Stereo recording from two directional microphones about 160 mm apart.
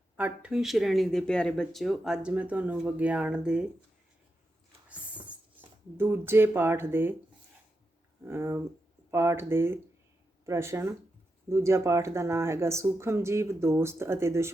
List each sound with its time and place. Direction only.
0.2 s speech: 5° right (ahead or behind)
6.0 s speech: 15° right (ahead or behind)
8.2 s speech: 15° right (ahead or behind)